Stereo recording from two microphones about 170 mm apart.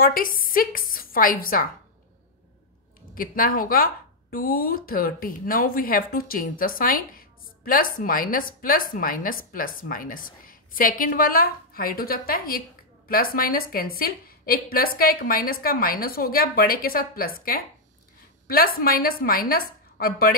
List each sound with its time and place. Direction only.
0.0 s speech: 55° left (ahead or behind)
3.2 s speech: 55° left (ahead or behind)